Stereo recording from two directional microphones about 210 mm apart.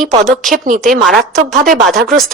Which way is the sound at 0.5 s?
40° right (ahead or behind).